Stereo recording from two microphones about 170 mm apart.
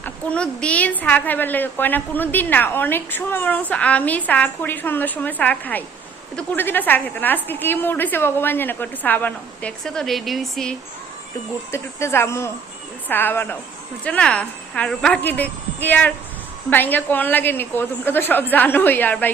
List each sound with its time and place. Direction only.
0.0 s a woman's voice: 5° left (ahead or behind)
11.7 s a woman's voice: 15° left (ahead or behind)